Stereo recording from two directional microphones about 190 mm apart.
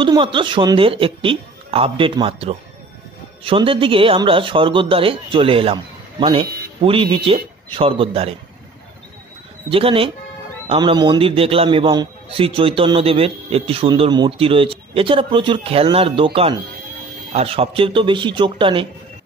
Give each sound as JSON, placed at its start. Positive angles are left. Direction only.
{"t": 0.0, "sound": "a man's voice", "side_deg": -25}
{"t": 9.7, "sound": "a man's voice", "side_deg": -30}